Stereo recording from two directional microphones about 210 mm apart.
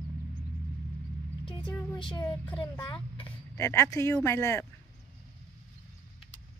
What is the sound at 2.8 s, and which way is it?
Speech, 25° left (ahead or behind).